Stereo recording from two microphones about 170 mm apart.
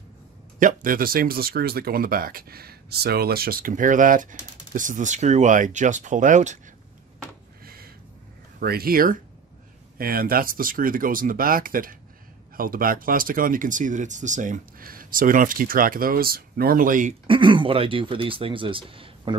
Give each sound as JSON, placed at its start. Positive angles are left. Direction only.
{"t": 0.6, "sound": "speech", "side_deg": -50}
{"t": 7.6, "sound": "a sound", "side_deg": -60}
{"t": 8.5, "sound": "speech", "side_deg": -65}
{"t": 17.3, "sound": "speech", "side_deg": -30}